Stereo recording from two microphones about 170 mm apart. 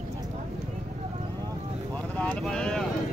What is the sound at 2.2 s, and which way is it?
Vehicle, 5° left (ahead or behind).